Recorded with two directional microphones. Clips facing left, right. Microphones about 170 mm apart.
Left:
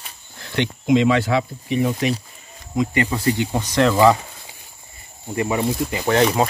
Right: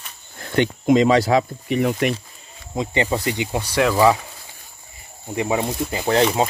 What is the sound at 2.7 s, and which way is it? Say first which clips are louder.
Speech: left 1 dB; 30° right (ahead or behind).